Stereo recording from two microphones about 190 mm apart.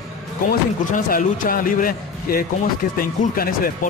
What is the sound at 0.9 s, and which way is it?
A man's voice, 45° left (ahead or behind).